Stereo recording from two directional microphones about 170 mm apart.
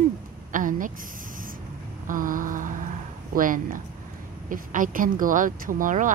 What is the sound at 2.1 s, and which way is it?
A woman's voice, 55° right (ahead or behind).